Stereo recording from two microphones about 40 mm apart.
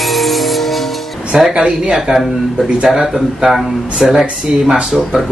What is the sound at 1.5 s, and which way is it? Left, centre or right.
Speech, right.